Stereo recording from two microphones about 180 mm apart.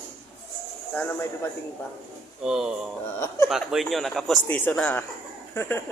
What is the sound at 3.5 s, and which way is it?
A man's voice, centre (ahead or behind).